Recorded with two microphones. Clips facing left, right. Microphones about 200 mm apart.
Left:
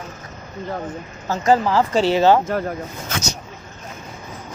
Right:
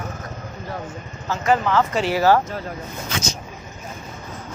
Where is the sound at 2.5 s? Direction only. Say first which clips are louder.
Left 7 dB; 55° left (ahead or behind).